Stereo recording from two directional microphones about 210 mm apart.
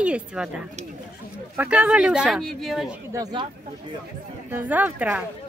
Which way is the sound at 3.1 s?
20° right (ahead or behind).